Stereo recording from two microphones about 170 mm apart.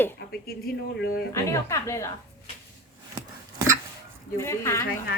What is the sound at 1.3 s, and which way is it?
Speech, 15° left (ahead or behind).